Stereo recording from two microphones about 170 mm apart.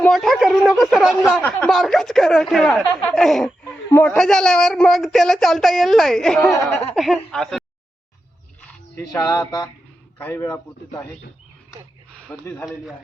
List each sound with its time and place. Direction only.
0.0 s speech: centre (ahead or behind)
2.8 s speech: 20° left (ahead or behind)
3.2 s speech: centre (ahead or behind)
8.6 s a man's voice: 20° left (ahead or behind)
12.3 s a man's voice: 10° left (ahead or behind)